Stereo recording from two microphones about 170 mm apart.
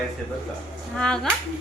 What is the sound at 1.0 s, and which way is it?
Speech, 5° left (ahead or behind).